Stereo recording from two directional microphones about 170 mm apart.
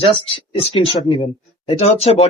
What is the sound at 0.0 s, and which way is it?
Speech, 30° left (ahead or behind).